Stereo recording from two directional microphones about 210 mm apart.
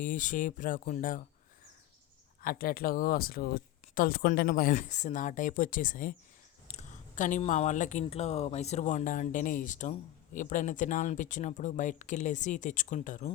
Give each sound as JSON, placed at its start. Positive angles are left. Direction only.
{"t": 0.0, "sound": "speech", "side_deg": 40}
{"t": 2.4, "sound": "speech", "side_deg": 45}